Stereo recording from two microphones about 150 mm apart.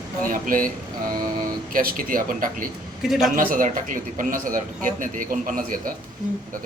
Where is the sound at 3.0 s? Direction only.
Centre (ahead or behind).